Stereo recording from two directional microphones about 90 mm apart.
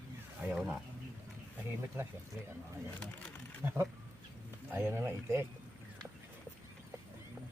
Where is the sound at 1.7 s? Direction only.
25° right (ahead or behind).